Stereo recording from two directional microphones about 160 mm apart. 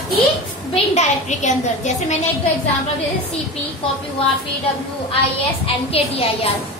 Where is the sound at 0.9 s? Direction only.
45° left (ahead or behind).